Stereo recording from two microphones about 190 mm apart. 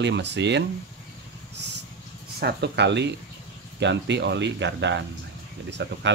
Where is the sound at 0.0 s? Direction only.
65° right (ahead or behind).